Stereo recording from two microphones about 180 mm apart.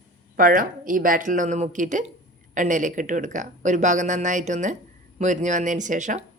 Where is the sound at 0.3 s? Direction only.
50° right (ahead or behind).